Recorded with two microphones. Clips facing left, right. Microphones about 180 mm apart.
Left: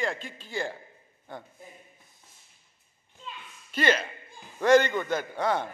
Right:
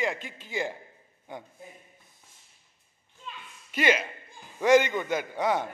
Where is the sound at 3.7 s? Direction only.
10° right (ahead or behind).